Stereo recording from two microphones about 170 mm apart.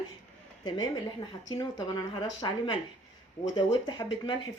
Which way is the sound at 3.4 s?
25° left (ahead or behind).